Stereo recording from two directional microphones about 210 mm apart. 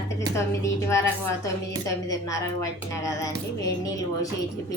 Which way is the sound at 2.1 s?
15° left (ahead or behind).